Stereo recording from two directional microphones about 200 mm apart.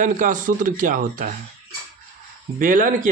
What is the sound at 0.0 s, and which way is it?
Speech, 40° right (ahead or behind).